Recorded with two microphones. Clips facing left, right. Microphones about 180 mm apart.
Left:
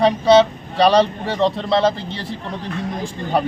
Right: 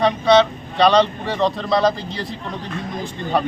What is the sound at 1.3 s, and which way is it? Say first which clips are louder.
Speech: left 1 dB; 30° left (ahead or behind).